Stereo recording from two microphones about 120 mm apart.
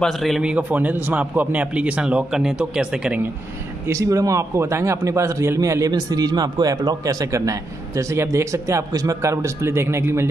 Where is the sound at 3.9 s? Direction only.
25° right (ahead or behind).